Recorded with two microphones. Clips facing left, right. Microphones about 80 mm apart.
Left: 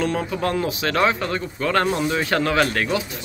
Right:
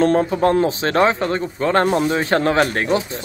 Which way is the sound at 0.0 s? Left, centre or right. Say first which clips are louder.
Right 7 dB; right.